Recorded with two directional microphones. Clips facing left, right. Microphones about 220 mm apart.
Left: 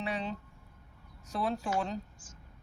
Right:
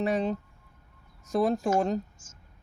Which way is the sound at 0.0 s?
45° right (ahead or behind).